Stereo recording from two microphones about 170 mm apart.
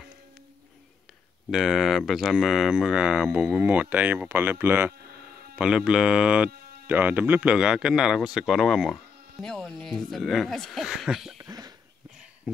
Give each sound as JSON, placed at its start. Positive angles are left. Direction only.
{"t": 1.5, "sound": "speech", "side_deg": 0}
{"t": 11.4, "sound": "cough", "side_deg": -20}